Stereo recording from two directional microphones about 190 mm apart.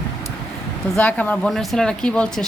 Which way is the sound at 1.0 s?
10° left (ahead or behind).